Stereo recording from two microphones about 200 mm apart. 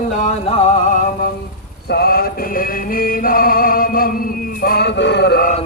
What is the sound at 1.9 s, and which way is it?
Chant, 50° left (ahead or behind).